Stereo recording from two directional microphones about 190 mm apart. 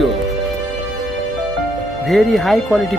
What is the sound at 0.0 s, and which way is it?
Music, centre (ahead or behind).